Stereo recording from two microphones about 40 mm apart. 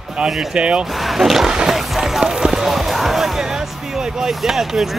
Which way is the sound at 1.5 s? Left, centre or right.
Centre.